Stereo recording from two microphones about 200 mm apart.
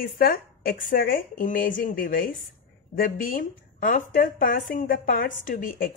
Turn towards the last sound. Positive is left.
turn(degrees=45)  # may be behind; listen again after turning